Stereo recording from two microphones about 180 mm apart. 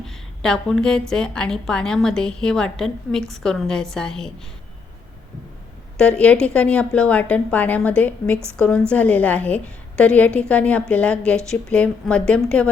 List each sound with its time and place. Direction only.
0.0 s a woman's voice: 5° left (ahead or behind)
6.0 s a woman's voice: 5° left (ahead or behind)